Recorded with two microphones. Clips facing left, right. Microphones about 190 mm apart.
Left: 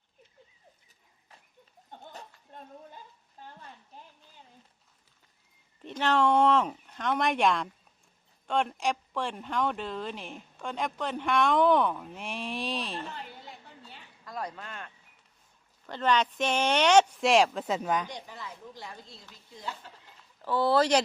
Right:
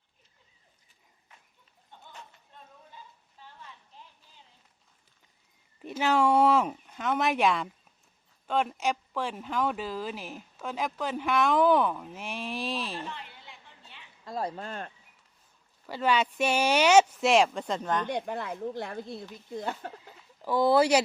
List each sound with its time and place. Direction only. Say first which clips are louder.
1.9 s a sound: left 4 dB; 50° left (ahead or behind)
5.8 s speech: right 1 dB; 10° right (ahead or behind)
13.0 s a sound: even; 40° left (ahead or behind)
14.3 s speech: right 4 dB; 30° right (ahead or behind)
15.9 s speech: even; 5° right (ahead or behind); by 18.1 s 10° left (ahead or behind)
18.1 s speech: right 10 dB; 55° right (ahead or behind)
20.4 s speech: right 2 dB; 15° right (ahead or behind)